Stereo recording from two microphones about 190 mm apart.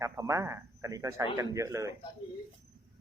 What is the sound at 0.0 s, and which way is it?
Speech, 15° right (ahead or behind).